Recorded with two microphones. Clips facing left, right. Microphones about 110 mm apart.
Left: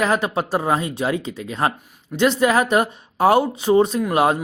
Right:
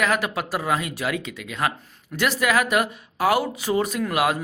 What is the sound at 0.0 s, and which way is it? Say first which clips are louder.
Speech: left 3 dB; 30° left (ahead or behind).